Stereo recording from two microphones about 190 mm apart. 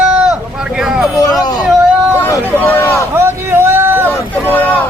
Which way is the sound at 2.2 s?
10° left (ahead or behind).